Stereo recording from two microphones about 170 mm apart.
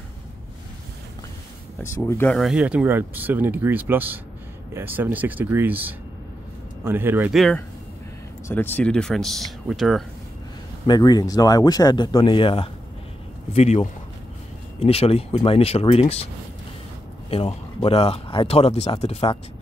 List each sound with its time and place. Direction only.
2.0 s speech: 15° left (ahead or behind)
2.3 s speech: 5° right (ahead or behind)
7.3 s speech: centre (ahead or behind)
10.9 s speech: 25° left (ahead or behind)
17.3 s speech: 35° left (ahead or behind)